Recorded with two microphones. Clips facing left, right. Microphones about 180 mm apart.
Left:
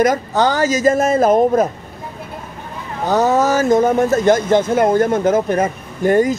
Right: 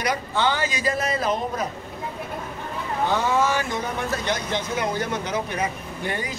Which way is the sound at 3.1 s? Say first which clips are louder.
Left 9 dB; 40° left (ahead or behind).